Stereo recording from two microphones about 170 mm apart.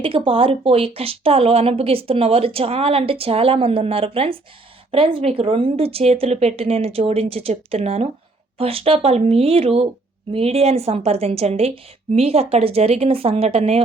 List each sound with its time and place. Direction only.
0.0 s speech: 30° right (ahead or behind)